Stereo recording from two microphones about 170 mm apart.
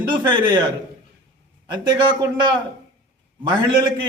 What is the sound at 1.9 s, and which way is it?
Speech, 25° right (ahead or behind).